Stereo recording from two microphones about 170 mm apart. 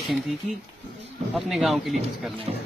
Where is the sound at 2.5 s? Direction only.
35° right (ahead or behind).